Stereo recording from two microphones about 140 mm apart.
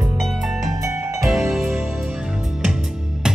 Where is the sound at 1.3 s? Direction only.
Centre (ahead or behind).